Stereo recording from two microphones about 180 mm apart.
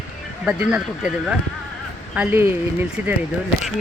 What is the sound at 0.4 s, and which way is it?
Speech, 5° right (ahead or behind).